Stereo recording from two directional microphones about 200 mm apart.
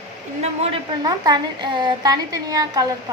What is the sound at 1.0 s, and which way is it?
A woman's voice, 20° right (ahead or behind).